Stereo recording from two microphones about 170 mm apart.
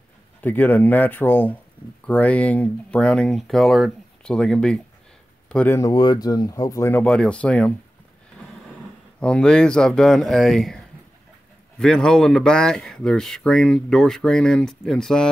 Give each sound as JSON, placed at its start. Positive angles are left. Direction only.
{"t": 0.4, "sound": "speech", "side_deg": 10}
{"t": 5.8, "sound": "speech", "side_deg": 20}
{"t": 9.2, "sound": "speech", "side_deg": 5}
{"t": 11.8, "sound": "speech", "side_deg": 5}